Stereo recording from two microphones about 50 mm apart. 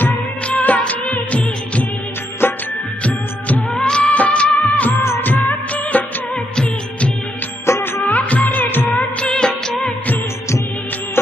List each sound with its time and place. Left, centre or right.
0.5 s music of bollywood: left
2.4 s music: left
3.0 s music: left
3.8 s music of bollywood: centre
6.3 s music of bollywood: centre
7.7 s music of bollywood: left
8.1 s music: left
9.2 s music of bollywood: centre